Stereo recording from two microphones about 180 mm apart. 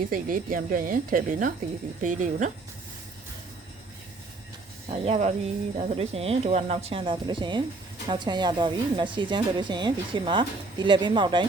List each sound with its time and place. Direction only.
0.1 s speech: 50° right (ahead or behind)
4.9 s a woman's voice: 40° right (ahead or behind)